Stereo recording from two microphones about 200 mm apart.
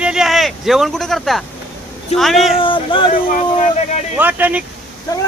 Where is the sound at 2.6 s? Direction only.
25° left (ahead or behind).